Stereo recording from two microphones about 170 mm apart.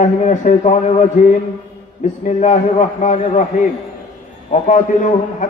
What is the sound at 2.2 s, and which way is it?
A man's voice, 45° left (ahead or behind).